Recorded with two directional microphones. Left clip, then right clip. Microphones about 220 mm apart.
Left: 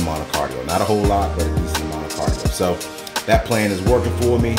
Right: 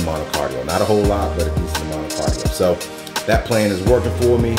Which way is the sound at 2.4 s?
5° left (ahead or behind).